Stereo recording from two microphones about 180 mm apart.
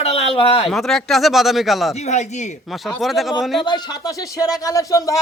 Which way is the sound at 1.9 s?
40° left (ahead or behind).